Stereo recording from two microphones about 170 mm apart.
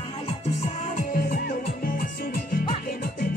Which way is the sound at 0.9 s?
55° left (ahead or behind).